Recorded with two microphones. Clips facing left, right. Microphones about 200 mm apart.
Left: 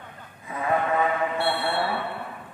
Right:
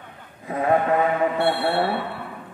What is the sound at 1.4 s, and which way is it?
Mantra, 45° right (ahead or behind).